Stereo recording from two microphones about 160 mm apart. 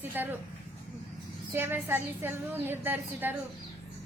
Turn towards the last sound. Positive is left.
turn(degrees=-10)  # may be behind; listen again after turning